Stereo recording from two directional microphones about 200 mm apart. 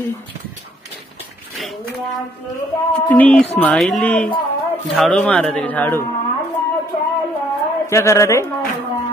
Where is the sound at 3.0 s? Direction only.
5° left (ahead or behind).